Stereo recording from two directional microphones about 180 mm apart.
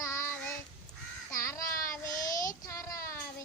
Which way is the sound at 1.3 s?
15° left (ahead or behind).